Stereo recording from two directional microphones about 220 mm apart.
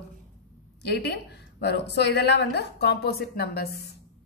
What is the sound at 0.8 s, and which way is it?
A woman's voice, 50° left (ahead or behind).